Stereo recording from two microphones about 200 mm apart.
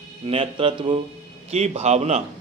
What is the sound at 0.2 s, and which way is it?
Speech, 30° right (ahead or behind).